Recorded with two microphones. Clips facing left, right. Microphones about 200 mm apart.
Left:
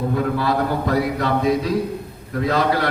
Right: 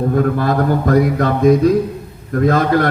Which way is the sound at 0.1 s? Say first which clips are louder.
Right 5 dB; 50° right (ahead or behind).